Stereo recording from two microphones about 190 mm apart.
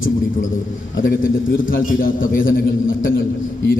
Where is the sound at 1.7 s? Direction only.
45° left (ahead or behind).